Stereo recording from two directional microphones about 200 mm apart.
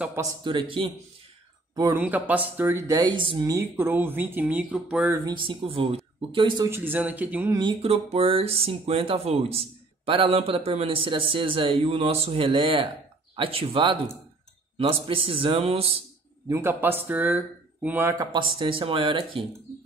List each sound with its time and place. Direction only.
0.0 s speech: 15° right (ahead or behind)
1.8 s speech: 10° right (ahead or behind)
5.2 s speech: 25° right (ahead or behind)
6.7 s speech: 10° right (ahead or behind)
7.5 s speech: 25° right (ahead or behind)
16.4 s speech: 15° right (ahead or behind)